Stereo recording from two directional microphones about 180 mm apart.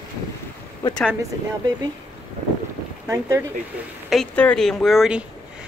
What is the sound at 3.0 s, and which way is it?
Speech, 15° right (ahead or behind).